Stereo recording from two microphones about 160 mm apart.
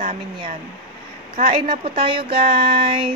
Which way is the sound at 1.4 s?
40° right (ahead or behind).